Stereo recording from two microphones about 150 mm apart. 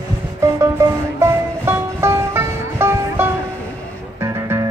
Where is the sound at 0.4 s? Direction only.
20° right (ahead or behind).